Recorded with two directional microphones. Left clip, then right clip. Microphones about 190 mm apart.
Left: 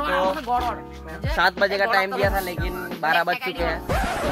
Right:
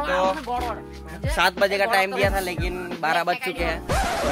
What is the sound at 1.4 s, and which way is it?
Speech, centre (ahead or behind).